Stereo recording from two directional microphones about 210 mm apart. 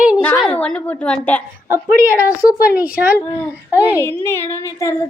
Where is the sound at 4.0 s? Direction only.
10° left (ahead or behind).